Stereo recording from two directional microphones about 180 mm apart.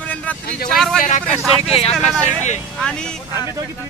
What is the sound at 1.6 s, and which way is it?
Speech, 35° left (ahead or behind).